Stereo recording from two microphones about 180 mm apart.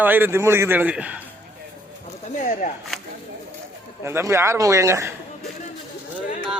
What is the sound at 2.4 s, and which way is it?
Speech, 45° left (ahead or behind).